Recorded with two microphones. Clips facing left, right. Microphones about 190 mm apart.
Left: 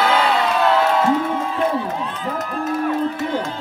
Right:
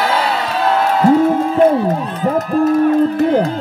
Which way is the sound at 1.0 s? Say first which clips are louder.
Right 8 dB; 40° right (ahead or behind).